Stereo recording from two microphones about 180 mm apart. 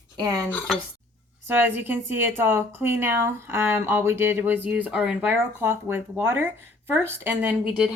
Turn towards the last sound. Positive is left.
turn(degrees=-5)  # may be behind; listen again after turning